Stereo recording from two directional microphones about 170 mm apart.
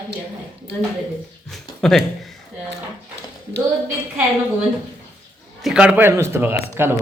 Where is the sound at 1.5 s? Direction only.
Centre (ahead or behind).